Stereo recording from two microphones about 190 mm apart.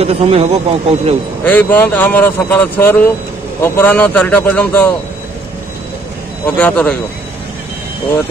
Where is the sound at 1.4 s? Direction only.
10° left (ahead or behind).